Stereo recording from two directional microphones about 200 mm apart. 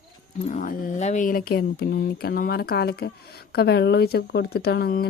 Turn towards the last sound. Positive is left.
turn(degrees=50)  # may be behind; listen again after turning